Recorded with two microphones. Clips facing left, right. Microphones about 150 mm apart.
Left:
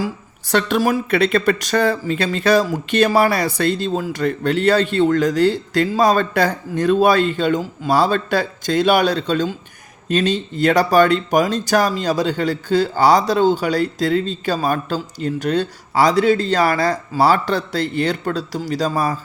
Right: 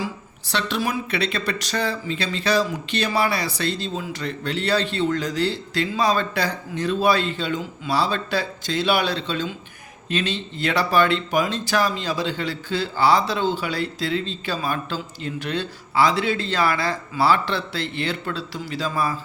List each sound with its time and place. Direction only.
0.0 s speech: 50° left (ahead or behind)